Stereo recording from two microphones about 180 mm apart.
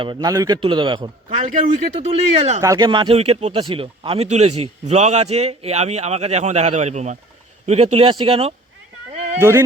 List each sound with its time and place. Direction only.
0.0 s a man's voice: 25° right (ahead or behind)
2.0 s speech: 35° right (ahead or behind)
2.6 s speech: 20° right (ahead or behind)
9.4 s a sound: 15° right (ahead or behind)